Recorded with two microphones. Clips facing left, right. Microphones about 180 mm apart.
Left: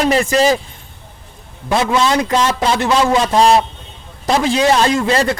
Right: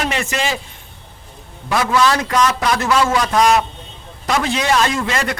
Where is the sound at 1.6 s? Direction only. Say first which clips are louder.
Left 1 dB; 25° left (ahead or behind).